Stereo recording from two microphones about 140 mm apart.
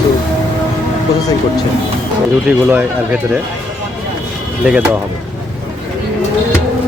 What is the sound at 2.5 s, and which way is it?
Speech, 10° right (ahead or behind).